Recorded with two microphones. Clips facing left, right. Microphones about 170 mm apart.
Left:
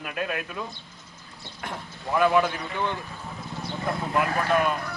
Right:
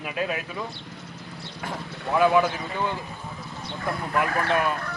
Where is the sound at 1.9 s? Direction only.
70° right (ahead or behind).